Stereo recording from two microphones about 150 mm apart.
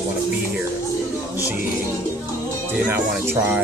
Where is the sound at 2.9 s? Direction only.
15° right (ahead or behind).